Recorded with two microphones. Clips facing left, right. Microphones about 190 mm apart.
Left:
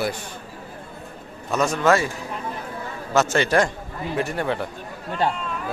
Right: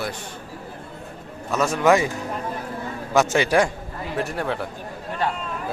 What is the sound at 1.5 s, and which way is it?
Speech, 5° right (ahead or behind).